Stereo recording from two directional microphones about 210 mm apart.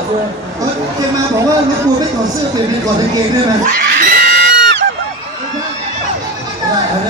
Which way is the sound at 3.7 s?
40° right (ahead or behind).